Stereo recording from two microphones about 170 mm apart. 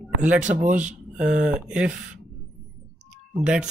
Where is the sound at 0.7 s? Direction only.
5° right (ahead or behind).